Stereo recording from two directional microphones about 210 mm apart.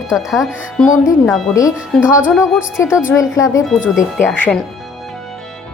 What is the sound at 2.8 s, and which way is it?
Speech, 10° left (ahead or behind).